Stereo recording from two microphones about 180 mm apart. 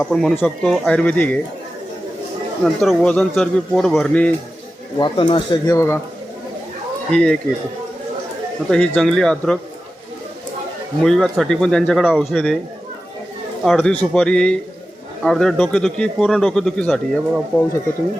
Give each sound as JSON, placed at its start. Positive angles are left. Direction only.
{"t": 0.1, "sound": "a man's voice", "side_deg": 0}
{"t": 2.8, "sound": "a man's voice", "side_deg": 5}
{"t": 4.9, "sound": "speech", "side_deg": 25}
{"t": 7.1, "sound": "a man's voice", "side_deg": 5}
{"t": 8.7, "sound": "a man's voice", "side_deg": 5}
{"t": 11.0, "sound": "a man's voice", "side_deg": 0}
{"t": 13.7, "sound": "a man's voice", "side_deg": 5}